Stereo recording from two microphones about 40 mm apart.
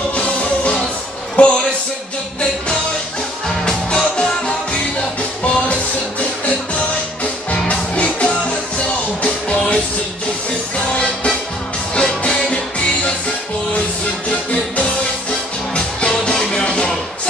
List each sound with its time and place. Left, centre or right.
0.1 s music: left
1.4 s a man's voice: left
3.4 s music: centre
7.5 s music: left
10.9 s music: left
15.7 s music: left